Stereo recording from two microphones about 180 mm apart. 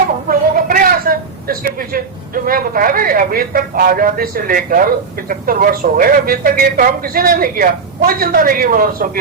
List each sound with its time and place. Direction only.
0.3 s a woman's voice: 50° right (ahead or behind)